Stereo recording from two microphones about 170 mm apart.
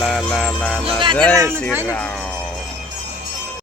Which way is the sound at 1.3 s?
20° right (ahead or behind).